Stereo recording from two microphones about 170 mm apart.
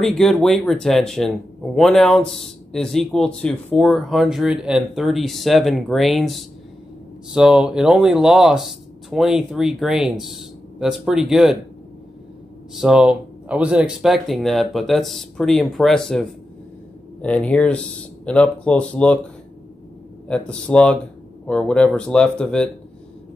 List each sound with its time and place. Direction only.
0.2 s a man's voice: 5° left (ahead or behind)
12.7 s a man's voice: 5° right (ahead or behind)
20.2 s a man's voice: 5° left (ahead or behind)